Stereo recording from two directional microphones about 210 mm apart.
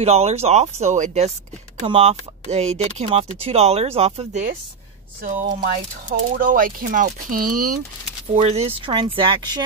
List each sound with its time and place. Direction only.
0.0 s speech: 30° right (ahead or behind)
8.4 s speech: 30° right (ahead or behind)